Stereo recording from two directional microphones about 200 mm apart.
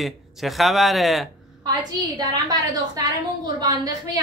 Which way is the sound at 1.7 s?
20° right (ahead or behind).